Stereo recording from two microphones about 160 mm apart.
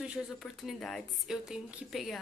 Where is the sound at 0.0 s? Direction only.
5° right (ahead or behind).